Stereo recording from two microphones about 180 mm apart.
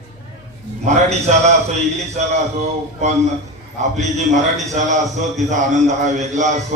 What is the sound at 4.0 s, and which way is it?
A man's voice, 40° right (ahead or behind).